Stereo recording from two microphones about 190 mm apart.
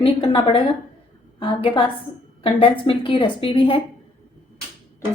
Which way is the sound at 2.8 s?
25° left (ahead or behind).